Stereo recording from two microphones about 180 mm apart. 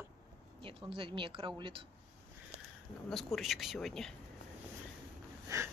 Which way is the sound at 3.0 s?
Centre (ahead or behind).